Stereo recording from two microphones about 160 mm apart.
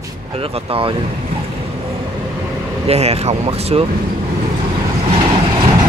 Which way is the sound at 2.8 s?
40° right (ahead or behind).